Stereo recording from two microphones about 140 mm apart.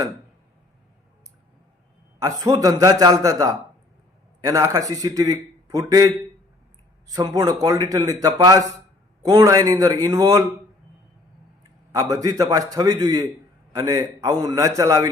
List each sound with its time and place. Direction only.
2.1 s a man's voice: 25° right (ahead or behind)
11.9 s a man's voice: 25° right (ahead or behind)